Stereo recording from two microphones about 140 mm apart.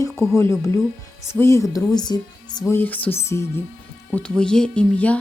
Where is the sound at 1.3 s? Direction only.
20° left (ahead or behind).